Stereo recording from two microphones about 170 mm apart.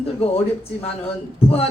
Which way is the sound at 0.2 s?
35° left (ahead or behind).